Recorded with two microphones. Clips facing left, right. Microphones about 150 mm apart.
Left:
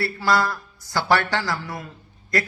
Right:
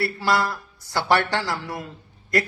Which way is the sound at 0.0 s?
25° right (ahead or behind).